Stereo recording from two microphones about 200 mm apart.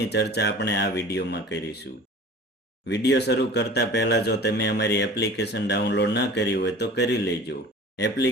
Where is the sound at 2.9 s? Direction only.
60° left (ahead or behind).